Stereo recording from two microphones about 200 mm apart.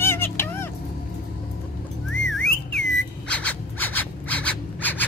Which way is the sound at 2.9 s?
5° left (ahead or behind).